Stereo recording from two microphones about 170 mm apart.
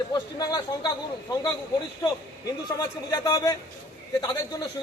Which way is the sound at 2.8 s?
20° left (ahead or behind).